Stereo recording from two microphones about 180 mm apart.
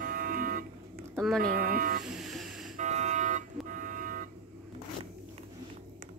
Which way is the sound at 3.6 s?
50° right (ahead or behind).